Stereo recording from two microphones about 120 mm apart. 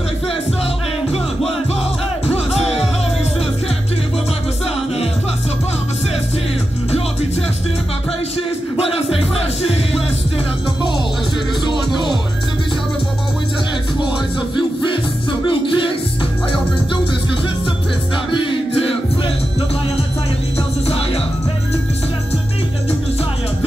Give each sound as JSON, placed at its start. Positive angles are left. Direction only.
{"t": 1.1, "sound": "music", "side_deg": 60}
{"t": 8.7, "sound": "music", "side_deg": 55}
{"t": 15.4, "sound": "music", "side_deg": 45}
{"t": 18.3, "sound": "music", "side_deg": 45}
{"t": 20.8, "sound": "music", "side_deg": 55}